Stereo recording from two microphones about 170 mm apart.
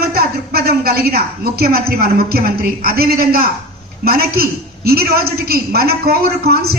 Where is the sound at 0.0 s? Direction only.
65° right (ahead or behind).